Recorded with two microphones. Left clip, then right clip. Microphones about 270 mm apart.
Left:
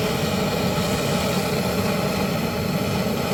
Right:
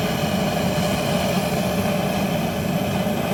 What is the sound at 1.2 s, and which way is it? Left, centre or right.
Vehicle, centre.